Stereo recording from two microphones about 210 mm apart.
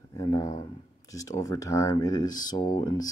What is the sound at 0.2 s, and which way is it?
Speech, 15° left (ahead or behind).